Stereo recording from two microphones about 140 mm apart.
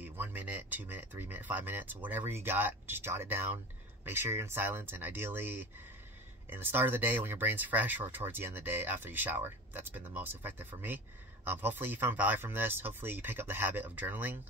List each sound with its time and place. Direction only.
0.0 s speech: 15° right (ahead or behind)